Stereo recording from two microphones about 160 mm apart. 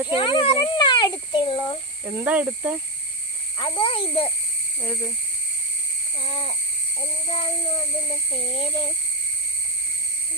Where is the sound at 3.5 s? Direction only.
30° left (ahead or behind).